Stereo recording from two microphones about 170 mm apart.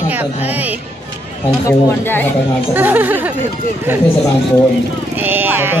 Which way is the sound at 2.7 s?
10° right (ahead or behind).